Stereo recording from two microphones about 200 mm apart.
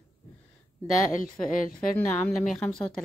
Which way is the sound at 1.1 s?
40° left (ahead or behind).